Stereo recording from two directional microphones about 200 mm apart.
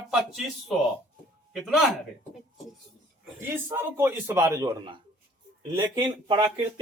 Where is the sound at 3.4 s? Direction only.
10° right (ahead or behind).